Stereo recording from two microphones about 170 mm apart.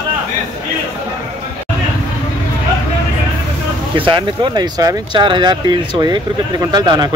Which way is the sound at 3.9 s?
30° right (ahead or behind).